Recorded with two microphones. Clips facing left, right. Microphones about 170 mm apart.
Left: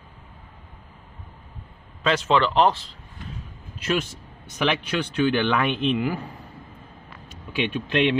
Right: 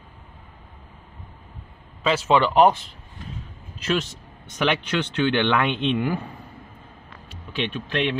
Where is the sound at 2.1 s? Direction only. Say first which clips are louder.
Right 1 dB; 5° right (ahead or behind).